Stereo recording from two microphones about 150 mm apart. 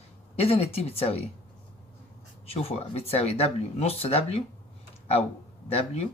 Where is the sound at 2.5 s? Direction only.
40° left (ahead or behind).